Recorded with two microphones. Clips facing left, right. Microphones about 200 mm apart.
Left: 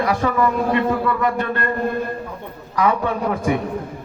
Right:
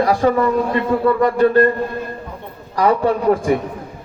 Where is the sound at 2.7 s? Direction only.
35° right (ahead or behind).